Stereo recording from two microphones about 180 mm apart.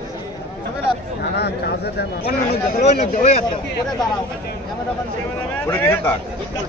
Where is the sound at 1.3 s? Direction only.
70° left (ahead or behind).